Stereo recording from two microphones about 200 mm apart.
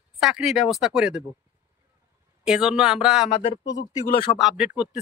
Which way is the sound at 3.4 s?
25° left (ahead or behind).